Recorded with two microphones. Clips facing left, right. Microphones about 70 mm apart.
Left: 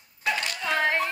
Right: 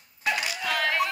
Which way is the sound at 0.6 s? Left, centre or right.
Left.